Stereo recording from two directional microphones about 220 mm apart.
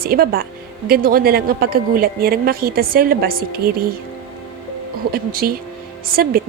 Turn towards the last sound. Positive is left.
turn(degrees=-45)  # may be behind; listen again after turning